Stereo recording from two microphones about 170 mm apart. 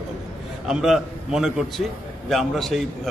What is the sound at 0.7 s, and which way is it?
Speech, 5° right (ahead or behind).